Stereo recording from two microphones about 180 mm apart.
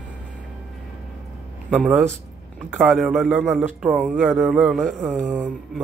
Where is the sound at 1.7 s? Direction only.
Centre (ahead or behind).